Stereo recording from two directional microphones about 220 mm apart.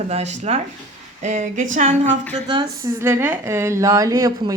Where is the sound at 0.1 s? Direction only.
30° right (ahead or behind).